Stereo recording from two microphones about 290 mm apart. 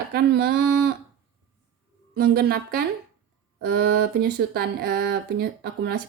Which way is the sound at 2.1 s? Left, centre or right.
Right.